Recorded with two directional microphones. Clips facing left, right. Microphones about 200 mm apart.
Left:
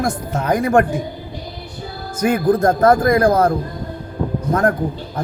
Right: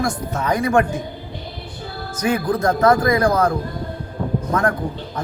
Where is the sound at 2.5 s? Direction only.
50° left (ahead or behind).